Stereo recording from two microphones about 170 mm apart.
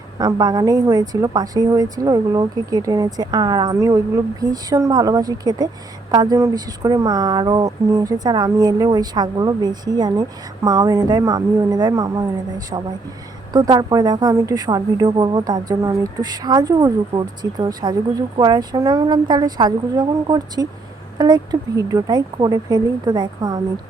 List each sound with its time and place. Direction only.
0.2 s speech: 25° right (ahead or behind)